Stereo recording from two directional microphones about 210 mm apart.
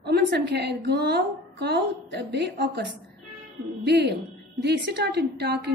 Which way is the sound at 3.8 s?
50° right (ahead or behind).